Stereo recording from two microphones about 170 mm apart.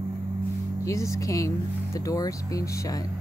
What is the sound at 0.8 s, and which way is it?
Speech, 15° left (ahead or behind).